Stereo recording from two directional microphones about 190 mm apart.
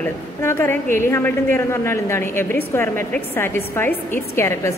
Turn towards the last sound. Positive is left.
turn(degrees=15)  # may be behind; listen again after turning